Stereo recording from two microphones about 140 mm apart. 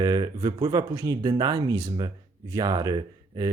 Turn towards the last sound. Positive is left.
turn(degrees=-30)  # may be behind; listen again after turning